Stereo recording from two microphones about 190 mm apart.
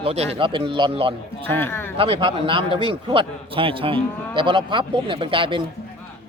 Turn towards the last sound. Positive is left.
turn(degrees=-25)  # may be behind; listen again after turning